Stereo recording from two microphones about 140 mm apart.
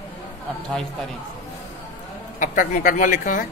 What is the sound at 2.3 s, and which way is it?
A man's voice, 70° left (ahead or behind).